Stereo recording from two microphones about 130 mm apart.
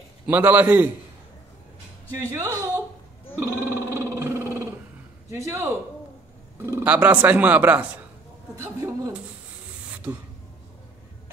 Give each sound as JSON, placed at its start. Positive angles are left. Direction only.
{"t": 0.3, "sound": "speech", "side_deg": -15}
{"t": 2.3, "sound": "speech", "side_deg": -25}
{"t": 3.3, "sound": "a sound", "side_deg": -20}
{"t": 5.3, "sound": "speech", "side_deg": -20}